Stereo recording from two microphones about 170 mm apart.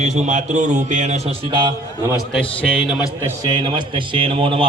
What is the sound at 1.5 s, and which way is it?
Speech, 25° right (ahead or behind).